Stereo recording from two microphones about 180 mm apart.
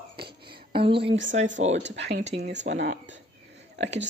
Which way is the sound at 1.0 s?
80° right.